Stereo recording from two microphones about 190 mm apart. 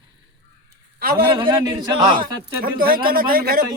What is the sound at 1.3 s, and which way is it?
A man's voice, 25° right (ahead or behind).